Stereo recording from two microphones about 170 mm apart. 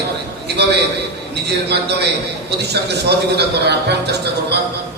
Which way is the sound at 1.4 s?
75° right (ahead or behind).